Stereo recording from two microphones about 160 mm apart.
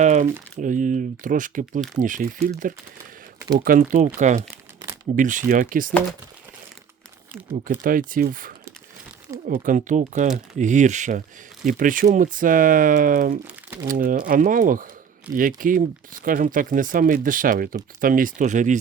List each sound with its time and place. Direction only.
0.0 s crumpling: 45° right (ahead or behind)
0.5 s speech: 55° right (ahead or behind)
3.6 s speech: 60° right (ahead or behind)
7.9 s speech: 60° right (ahead or behind)